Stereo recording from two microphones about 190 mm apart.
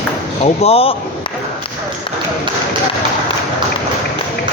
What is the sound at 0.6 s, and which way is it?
Speech, 30° left (ahead or behind).